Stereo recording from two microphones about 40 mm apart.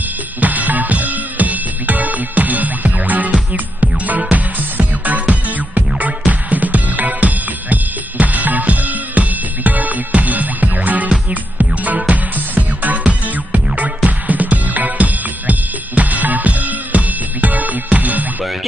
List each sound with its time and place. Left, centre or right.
0.4 s music: right